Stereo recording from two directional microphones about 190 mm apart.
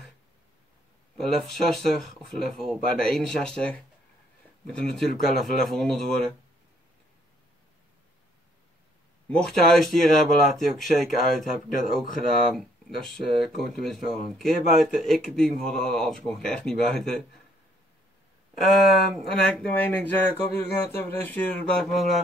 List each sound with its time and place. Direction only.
1.1 s speech: centre (ahead or behind)
9.3 s speech: centre (ahead or behind)
18.6 s speech: centre (ahead or behind)